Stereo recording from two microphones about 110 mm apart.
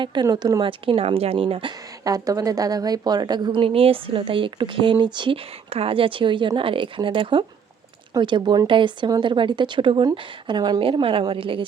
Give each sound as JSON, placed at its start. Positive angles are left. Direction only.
{"t": 0.0, "sound": "speech", "side_deg": -40}
{"t": 0.6, "sound": "speech", "side_deg": -55}
{"t": 2.0, "sound": "a woman's voice", "side_deg": -35}
{"t": 5.7, "sound": "a woman's voice", "side_deg": -55}
{"t": 10.8, "sound": "speech", "side_deg": -55}